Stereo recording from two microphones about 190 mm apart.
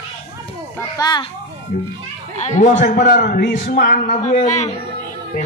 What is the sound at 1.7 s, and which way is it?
A man's voice, 45° left (ahead or behind).